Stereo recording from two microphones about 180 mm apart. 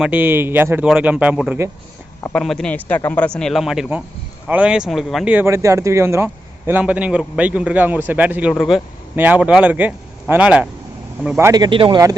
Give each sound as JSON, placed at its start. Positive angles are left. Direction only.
{"t": 0.0, "sound": "speech", "side_deg": -10}
{"t": 2.2, "sound": "speech", "side_deg": 5}
{"t": 11.3, "sound": "speech", "side_deg": -20}